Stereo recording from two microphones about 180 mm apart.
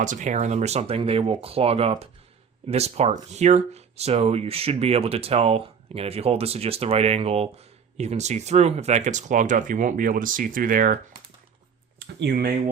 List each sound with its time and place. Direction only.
0.0 s speech: 45° right (ahead or behind)
11.9 s speech: 70° right (ahead or behind)